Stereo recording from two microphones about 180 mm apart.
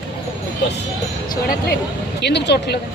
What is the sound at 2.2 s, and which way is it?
Speech, 70° left (ahead or behind).